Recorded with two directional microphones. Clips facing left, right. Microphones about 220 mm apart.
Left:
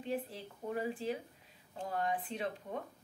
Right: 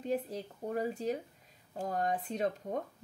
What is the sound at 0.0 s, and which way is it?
A woman's voice, 40° right (ahead or behind).